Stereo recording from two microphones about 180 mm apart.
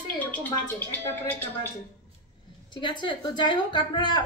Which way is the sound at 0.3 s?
10° left (ahead or behind).